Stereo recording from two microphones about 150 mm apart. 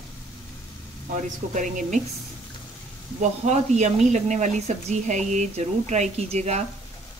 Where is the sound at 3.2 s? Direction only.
50° right (ahead or behind).